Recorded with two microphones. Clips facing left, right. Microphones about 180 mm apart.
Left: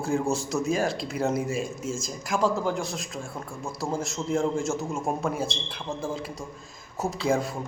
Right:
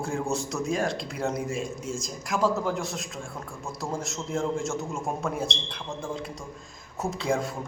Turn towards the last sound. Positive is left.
turn(degrees=0)  # may be behind; listen again after turning